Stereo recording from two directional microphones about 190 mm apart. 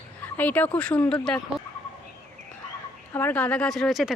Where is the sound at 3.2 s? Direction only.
10° left (ahead or behind).